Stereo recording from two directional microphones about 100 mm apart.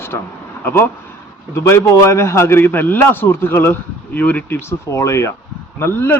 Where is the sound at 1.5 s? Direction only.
30° left (ahead or behind).